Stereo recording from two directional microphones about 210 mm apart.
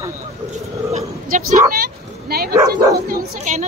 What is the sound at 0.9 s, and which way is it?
Speech, 35° right (ahead or behind).